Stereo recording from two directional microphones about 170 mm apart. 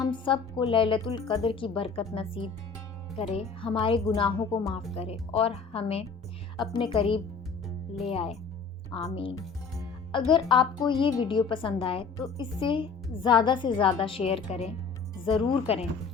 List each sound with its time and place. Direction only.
0.0 s speech: 30° left (ahead or behind)
3.6 s a woman's voice: 30° left (ahead or behind)